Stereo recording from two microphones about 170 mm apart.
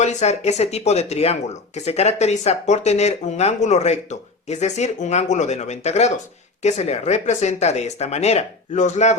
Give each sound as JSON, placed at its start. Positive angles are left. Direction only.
{"t": 0.0, "sound": "speech", "side_deg": 40}